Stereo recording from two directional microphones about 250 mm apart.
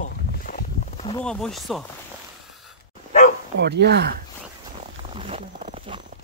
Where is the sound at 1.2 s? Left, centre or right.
Centre.